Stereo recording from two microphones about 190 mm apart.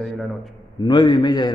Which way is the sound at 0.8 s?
25° left (ahead or behind).